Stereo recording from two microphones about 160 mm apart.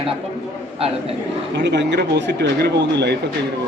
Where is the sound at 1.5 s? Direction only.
90° right.